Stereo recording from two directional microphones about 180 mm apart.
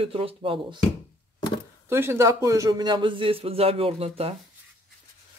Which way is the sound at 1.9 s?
15° right (ahead or behind).